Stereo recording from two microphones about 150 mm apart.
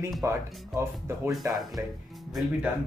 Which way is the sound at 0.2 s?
15° right (ahead or behind).